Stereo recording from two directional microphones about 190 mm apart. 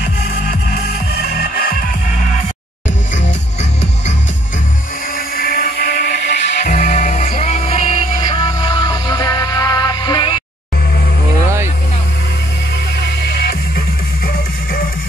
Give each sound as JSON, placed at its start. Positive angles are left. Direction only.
{"t": 1.2, "sound": "music", "side_deg": 55}
{"t": 5.1, "sound": "music", "side_deg": 55}
{"t": 6.6, "sound": "music", "side_deg": 40}
{"t": 11.4, "sound": "vehicle", "side_deg": -15}
{"t": 13.2, "sound": "music", "side_deg": 55}